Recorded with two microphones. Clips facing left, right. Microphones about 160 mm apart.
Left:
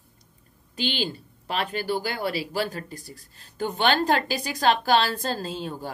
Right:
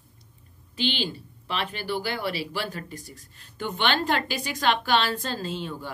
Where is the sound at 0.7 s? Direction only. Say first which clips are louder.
Even; 40° left (ahead or behind).